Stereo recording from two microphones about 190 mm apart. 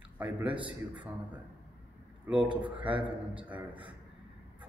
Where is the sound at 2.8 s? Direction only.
5° right (ahead or behind).